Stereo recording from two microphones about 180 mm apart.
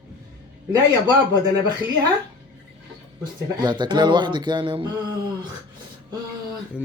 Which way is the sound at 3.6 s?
25° right (ahead or behind).